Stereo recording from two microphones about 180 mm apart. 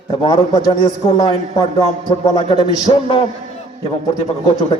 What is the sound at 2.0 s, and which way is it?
Speech, 25° left (ahead or behind).